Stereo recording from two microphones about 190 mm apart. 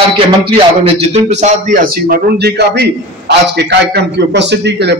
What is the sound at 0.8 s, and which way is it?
A man's voice, 35° right (ahead or behind).